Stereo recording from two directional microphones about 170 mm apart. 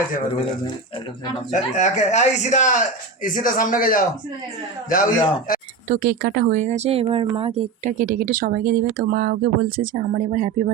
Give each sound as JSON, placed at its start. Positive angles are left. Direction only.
{"t": 1.5, "sound": "speech", "side_deg": 45}
{"t": 5.9, "sound": "speech", "side_deg": -55}
{"t": 7.9, "sound": "speech", "side_deg": -55}